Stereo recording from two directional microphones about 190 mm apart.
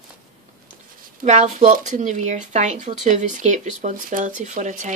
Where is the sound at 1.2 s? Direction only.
40° right (ahead or behind).